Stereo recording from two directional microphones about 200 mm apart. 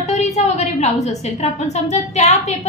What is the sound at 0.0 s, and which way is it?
A woman's voice, 35° left (ahead or behind).